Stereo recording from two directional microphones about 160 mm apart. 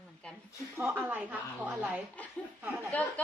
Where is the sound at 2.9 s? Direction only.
10° left (ahead or behind).